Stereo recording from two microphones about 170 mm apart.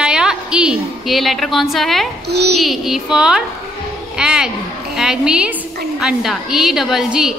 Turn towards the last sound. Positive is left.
turn(degrees=-5)  # may be behind; listen again after turning